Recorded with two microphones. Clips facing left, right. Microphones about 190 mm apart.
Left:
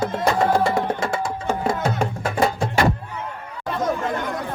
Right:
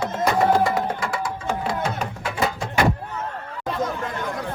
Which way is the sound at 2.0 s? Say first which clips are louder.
Left 4 dB; 45° left (ahead or behind).